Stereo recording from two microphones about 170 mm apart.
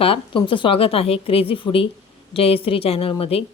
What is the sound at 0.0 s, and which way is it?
A woman's voice, 30° left (ahead or behind).